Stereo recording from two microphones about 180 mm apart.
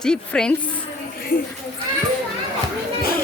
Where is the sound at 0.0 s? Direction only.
5° left (ahead or behind).